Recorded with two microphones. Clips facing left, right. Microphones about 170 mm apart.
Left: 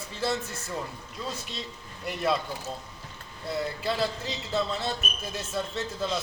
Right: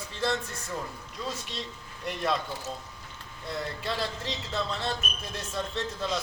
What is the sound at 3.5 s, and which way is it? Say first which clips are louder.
Speech: left 4 dB; centre (ahead or behind).